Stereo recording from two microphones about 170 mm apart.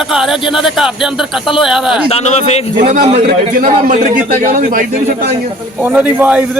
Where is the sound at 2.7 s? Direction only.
50° right (ahead or behind).